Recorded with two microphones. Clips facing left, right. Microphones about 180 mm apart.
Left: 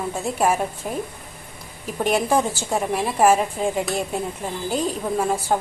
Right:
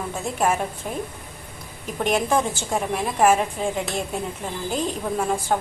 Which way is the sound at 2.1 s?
5° left (ahead or behind).